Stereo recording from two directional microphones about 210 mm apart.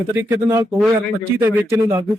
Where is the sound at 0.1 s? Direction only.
10° right (ahead or behind).